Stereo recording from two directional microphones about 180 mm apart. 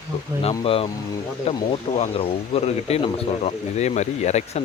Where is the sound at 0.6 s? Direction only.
30° left (ahead or behind).